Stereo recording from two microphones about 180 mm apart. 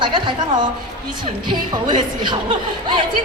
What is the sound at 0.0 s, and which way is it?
A woman's voice, 25° right (ahead or behind).